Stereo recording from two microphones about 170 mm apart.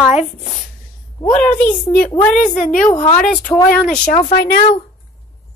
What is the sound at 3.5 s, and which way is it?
Speech, 20° left (ahead or behind).